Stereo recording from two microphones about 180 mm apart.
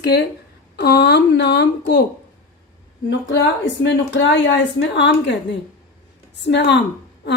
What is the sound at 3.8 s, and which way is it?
A woman's voice, 80° left.